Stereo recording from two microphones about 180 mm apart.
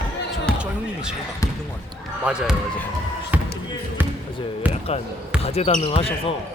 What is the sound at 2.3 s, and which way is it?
Speech, 5° right (ahead or behind).